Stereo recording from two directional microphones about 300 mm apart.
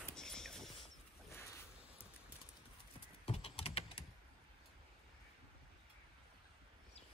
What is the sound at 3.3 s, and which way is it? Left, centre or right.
Typing, centre.